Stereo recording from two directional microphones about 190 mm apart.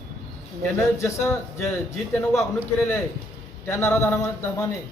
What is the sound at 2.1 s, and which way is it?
Speech, centre (ahead or behind).